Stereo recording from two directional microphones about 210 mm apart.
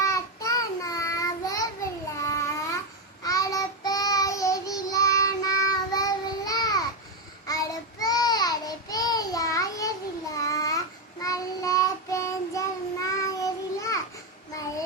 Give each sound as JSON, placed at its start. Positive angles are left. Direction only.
{"t": 0.0, "sound": "child singing", "side_deg": 15}
{"t": 10.3, "sound": "babbling", "side_deg": 15}
{"t": 11.2, "sound": "child singing", "side_deg": 15}